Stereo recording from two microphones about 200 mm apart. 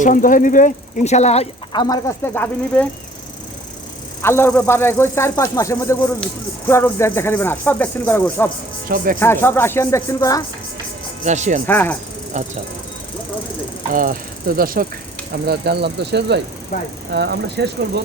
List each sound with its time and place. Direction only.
0.0 s speech: 40° left (ahead or behind); by 2.8 s 10° left (ahead or behind)
4.2 s speech: 10° left (ahead or behind)
11.3 s speech: 35° right (ahead or behind)
11.6 s speech: 10° left (ahead or behind)
13.9 s speech: 45° right (ahead or behind)
16.7 s speech: 40° left (ahead or behind)
17.1 s speech: 55° right (ahead or behind)